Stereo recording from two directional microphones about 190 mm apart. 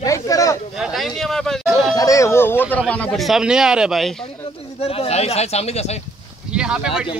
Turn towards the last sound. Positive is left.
turn(degrees=-5)  # may be behind; listen again after turning